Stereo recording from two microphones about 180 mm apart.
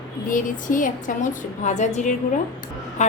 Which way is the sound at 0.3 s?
45° left (ahead or behind).